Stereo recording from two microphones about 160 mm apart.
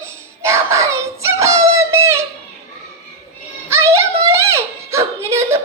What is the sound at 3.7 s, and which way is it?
Music, 15° right (ahead or behind).